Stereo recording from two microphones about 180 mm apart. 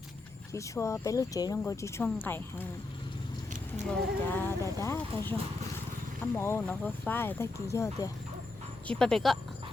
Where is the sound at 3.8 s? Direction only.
10° left (ahead or behind).